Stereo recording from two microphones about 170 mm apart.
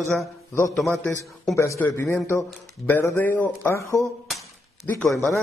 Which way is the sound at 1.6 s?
15° left (ahead or behind).